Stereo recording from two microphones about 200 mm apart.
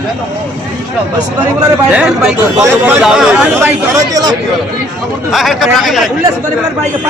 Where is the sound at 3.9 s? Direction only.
20° right (ahead or behind).